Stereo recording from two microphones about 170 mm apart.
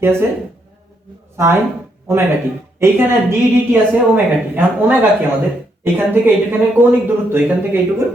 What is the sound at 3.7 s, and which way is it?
Speech, 10° right (ahead or behind).